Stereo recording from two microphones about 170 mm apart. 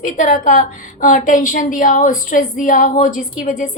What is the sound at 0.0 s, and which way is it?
A woman's voice, 50° left (ahead or behind).